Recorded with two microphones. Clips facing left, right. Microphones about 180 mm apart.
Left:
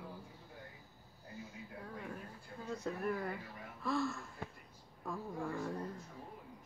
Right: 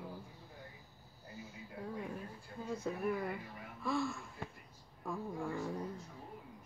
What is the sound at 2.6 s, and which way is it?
Speech, 5° right (ahead or behind).